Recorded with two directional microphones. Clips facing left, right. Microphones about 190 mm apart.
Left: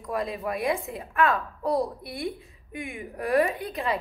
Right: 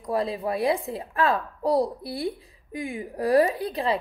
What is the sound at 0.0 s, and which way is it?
A woman's voice, 30° right (ahead or behind).